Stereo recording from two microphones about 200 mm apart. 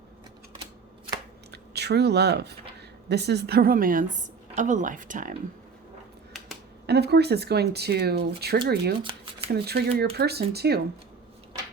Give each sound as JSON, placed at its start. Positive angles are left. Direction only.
{"t": 1.5, "sound": "a woman's voice", "side_deg": -55}
{"t": 6.3, "sound": "finger snapping", "side_deg": 0}
{"t": 6.8, "sound": "speech", "side_deg": -55}
{"t": 9.0, "sound": "shuffling cards", "side_deg": -25}
{"t": 9.5, "sound": "speech", "side_deg": -50}